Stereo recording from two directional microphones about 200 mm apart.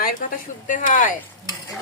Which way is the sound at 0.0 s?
40° left (ahead or behind).